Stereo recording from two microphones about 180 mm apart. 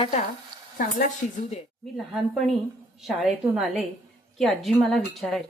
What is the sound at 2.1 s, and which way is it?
A woman's voice, centre (ahead or behind).